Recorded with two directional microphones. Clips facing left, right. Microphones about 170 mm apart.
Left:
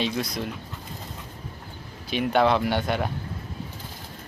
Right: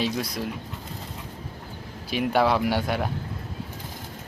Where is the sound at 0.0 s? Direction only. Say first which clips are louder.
Even; 5° right (ahead or behind).